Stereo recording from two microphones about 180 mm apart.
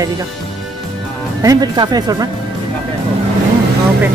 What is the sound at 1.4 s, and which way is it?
Speech, 20° right (ahead or behind).